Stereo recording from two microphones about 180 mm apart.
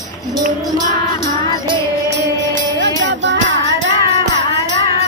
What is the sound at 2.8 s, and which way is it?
Music, 80° right.